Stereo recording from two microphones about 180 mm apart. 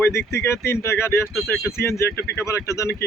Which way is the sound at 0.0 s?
15° left (ahead or behind).